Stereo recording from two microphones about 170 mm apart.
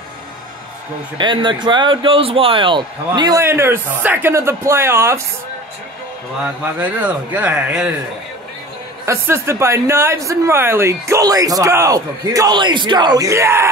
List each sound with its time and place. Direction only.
1.1 s a man's voice: 30° right (ahead or behind)
6.4 s speech: 10° right (ahead or behind)
9.0 s speech: 15° right (ahead or behind)